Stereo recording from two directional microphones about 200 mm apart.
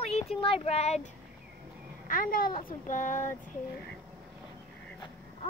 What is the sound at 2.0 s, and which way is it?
Speech, 45° left (ahead or behind).